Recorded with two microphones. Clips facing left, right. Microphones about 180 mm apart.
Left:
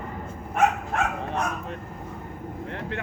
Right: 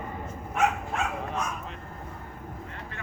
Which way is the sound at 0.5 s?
60° left (ahead or behind).